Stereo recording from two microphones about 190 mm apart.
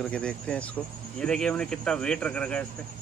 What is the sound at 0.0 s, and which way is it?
Speech, 5° left (ahead or behind).